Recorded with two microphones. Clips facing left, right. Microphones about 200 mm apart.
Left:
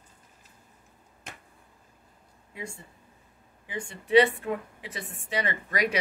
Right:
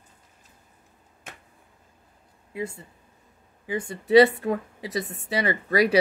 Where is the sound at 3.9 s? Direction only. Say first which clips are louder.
Right 5 dB; 40° right (ahead or behind).